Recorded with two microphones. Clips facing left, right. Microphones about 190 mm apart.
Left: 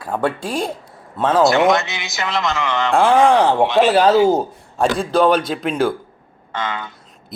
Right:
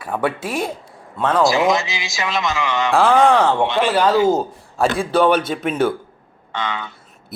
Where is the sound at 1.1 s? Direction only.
5° left (ahead or behind).